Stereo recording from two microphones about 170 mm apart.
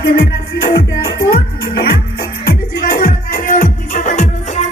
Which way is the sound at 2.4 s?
55° left (ahead or behind).